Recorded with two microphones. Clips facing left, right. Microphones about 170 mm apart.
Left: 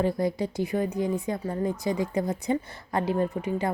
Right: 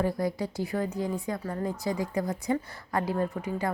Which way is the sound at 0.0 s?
25° left (ahead or behind).